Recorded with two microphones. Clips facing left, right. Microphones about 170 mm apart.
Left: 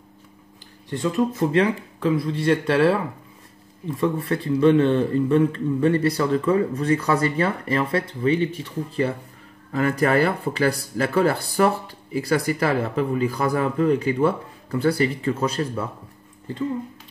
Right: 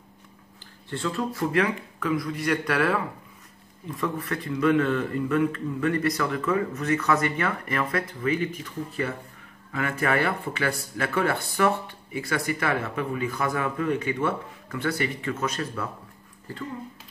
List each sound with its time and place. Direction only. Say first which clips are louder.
0.8 s speech: left 6 dB; 15° left (ahead or behind)